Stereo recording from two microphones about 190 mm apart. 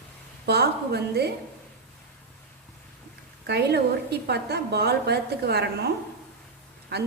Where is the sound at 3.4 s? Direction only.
60° right (ahead or behind).